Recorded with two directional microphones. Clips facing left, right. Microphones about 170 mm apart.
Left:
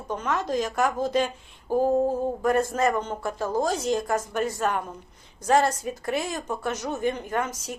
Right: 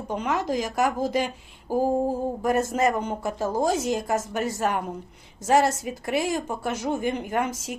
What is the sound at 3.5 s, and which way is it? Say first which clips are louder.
Speech: right 1 dB; 50° right (ahead or behind).